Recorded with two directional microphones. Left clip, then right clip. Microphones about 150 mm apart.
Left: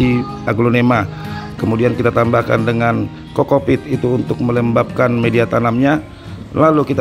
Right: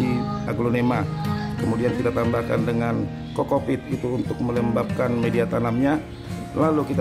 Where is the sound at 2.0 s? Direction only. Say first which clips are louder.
Left 9 dB; 30° left (ahead or behind).